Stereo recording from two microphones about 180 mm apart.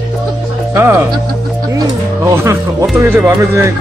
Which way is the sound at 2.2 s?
15° right (ahead or behind).